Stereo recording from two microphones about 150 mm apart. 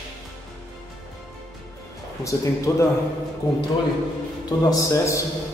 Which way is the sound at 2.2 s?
20° left (ahead or behind).